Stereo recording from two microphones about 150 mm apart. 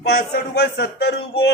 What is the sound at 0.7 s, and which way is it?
Speech, 90° left.